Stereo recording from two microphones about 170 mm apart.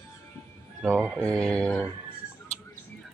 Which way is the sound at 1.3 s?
5° left (ahead or behind).